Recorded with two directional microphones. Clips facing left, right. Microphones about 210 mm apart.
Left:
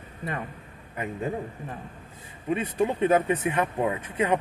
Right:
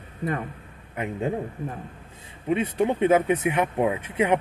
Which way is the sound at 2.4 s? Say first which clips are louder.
Right 2 dB; 20° right (ahead or behind).